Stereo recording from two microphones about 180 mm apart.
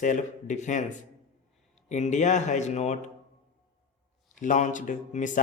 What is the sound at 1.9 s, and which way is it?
Speech, 40° left (ahead or behind).